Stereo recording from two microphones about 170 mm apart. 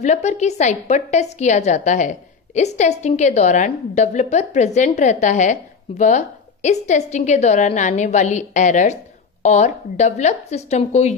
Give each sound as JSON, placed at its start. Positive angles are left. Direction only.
{"t": 0.0, "sound": "a woman's voice", "side_deg": 45}